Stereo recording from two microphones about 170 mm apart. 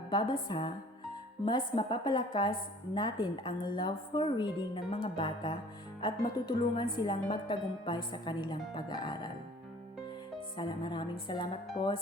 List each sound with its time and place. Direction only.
0.1 s speech: 25° left (ahead or behind)
10.6 s speech: 25° left (ahead or behind)